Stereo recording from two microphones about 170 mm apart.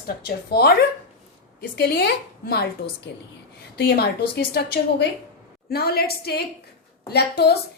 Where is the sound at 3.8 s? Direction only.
65° left (ahead or behind).